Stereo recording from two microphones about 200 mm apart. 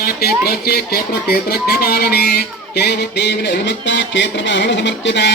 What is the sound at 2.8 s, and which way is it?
Fowl, 55° left (ahead or behind).